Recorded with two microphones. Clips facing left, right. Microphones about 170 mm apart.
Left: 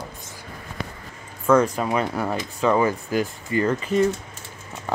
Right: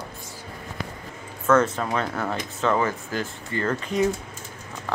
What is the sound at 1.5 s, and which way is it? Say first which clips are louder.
Speech: left 2 dB; 10° left (ahead or behind).